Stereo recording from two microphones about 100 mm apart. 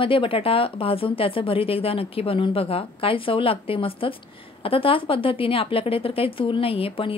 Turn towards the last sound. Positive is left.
turn(degrees=65)  # may be behind; listen again after turning